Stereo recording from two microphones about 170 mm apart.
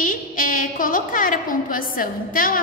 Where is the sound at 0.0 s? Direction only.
55° left (ahead or behind).